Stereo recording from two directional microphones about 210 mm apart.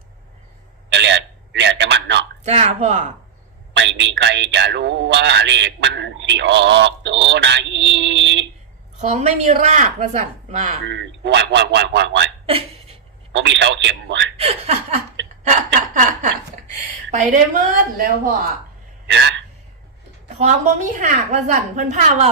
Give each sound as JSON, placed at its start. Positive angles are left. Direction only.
{"t": 0.9, "sound": "a sound", "side_deg": -55}
{"t": 2.4, "sound": "a woman's voice", "side_deg": -30}
{"t": 3.8, "sound": "speech", "side_deg": -60}
{"t": 9.0, "sound": "a woman's voice", "side_deg": -30}
{"t": 10.8, "sound": "speech", "side_deg": -60}
{"t": 12.5, "sound": "a sound", "side_deg": -30}
{"t": 13.3, "sound": "speech", "side_deg": -55}
{"t": 14.3, "sound": "speech", "side_deg": -30}
{"t": 15.2, "sound": "a sound", "side_deg": -60}
{"t": 17.2, "sound": "a woman's voice", "side_deg": -40}
{"t": 19.0, "sound": "a man's voice", "side_deg": -55}
{"t": 20.4, "sound": "a woman's voice", "side_deg": -35}